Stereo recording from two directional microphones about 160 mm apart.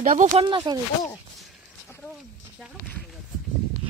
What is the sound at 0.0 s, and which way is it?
Speech, 50° right (ahead or behind).